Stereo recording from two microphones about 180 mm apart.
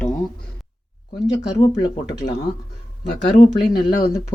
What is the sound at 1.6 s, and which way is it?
Speech, 20° left (ahead or behind).